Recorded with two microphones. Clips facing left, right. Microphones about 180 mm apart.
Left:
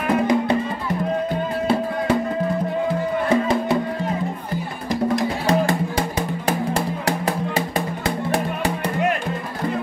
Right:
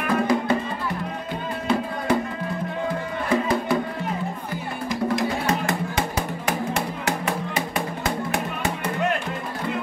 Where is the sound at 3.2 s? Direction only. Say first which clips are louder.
Left 2 dB; 25° left (ahead or behind).